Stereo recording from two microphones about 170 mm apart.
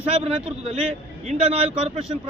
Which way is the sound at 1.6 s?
5° right (ahead or behind).